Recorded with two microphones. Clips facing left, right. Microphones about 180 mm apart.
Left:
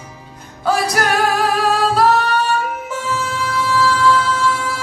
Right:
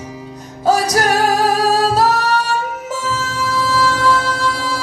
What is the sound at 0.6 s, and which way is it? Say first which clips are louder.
Music: right 3 dB; 40° right (ahead or behind).